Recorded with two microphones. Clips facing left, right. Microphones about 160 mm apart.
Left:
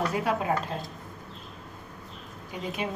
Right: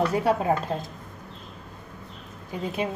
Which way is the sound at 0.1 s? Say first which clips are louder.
Right 5 dB; 30° right (ahead or behind).